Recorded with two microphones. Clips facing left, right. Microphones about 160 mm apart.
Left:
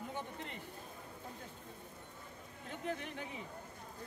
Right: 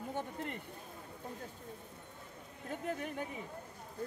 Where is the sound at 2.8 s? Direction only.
45° right (ahead or behind).